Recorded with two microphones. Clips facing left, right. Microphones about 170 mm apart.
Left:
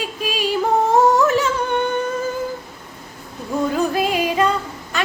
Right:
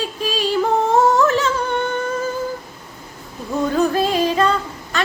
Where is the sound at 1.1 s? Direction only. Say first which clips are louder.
Even; 15° left (ahead or behind).